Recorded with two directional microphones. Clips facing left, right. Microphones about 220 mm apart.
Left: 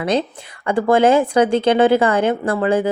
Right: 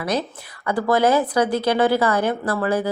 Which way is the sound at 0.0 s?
25° left (ahead or behind).